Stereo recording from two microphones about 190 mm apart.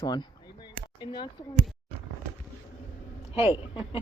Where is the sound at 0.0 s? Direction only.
20° left (ahead or behind).